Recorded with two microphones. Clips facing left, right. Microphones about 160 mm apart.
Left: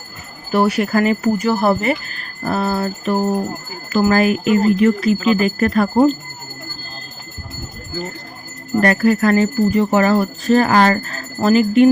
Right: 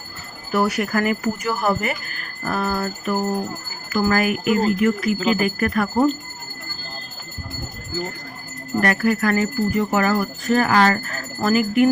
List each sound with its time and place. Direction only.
0.5 s speech: 25° left (ahead or behind)
8.8 s speech: 30° left (ahead or behind)